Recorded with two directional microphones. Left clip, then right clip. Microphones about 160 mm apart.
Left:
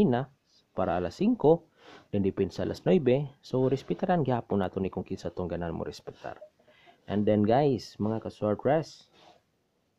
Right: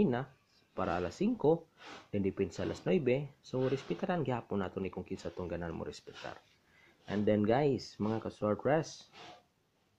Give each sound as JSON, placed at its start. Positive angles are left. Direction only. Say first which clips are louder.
{"t": 0.0, "sound": "speech", "louder": "left 6 dB", "side_deg": 30}
{"t": 7.1, "sound": "speech", "louder": "left 5 dB", "side_deg": 25}